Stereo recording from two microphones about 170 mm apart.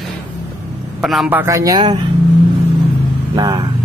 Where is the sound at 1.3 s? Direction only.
15° right (ahead or behind).